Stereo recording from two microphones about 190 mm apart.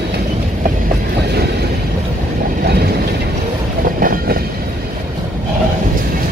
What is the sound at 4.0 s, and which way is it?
Train, 50° right (ahead or behind).